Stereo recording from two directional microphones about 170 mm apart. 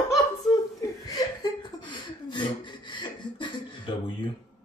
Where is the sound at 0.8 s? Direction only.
20° left (ahead or behind).